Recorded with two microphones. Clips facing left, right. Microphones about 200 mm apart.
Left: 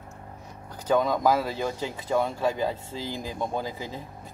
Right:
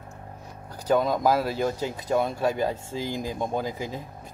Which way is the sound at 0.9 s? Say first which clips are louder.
Even; 10° right (ahead or behind).